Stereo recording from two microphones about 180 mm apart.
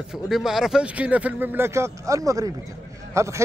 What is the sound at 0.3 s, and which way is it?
A man's voice, centre (ahead or behind).